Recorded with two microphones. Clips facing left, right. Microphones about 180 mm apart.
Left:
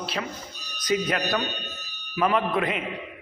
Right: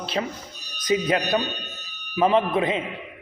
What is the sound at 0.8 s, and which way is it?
A man's voice, 25° right (ahead or behind).